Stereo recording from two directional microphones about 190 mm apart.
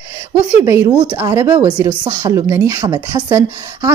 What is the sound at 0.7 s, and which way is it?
A woman's voice, 15° right (ahead or behind).